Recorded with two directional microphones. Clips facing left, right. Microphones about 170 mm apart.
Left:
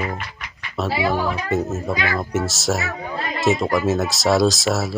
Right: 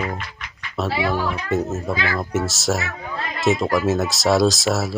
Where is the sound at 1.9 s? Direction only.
20° left (ahead or behind).